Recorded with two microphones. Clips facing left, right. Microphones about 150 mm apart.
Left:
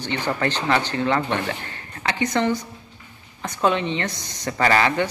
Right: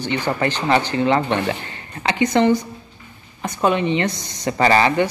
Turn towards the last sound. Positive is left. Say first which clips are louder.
# right 4 dB
turn(degrees=-15)  # may be behind; listen again after turning